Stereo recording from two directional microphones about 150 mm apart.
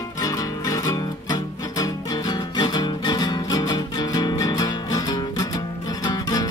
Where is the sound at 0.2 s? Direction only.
25° left (ahead or behind).